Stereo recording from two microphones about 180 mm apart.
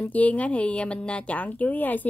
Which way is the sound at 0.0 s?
10° left (ahead or behind).